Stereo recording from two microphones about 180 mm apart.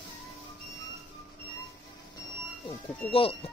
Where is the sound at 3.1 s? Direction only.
30° left (ahead or behind).